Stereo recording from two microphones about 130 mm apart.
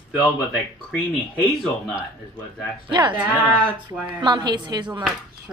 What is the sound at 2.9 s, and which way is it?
Speech, 35° right (ahead or behind).